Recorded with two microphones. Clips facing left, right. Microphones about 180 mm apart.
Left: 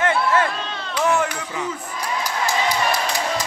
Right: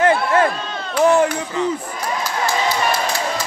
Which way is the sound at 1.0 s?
35° right (ahead or behind).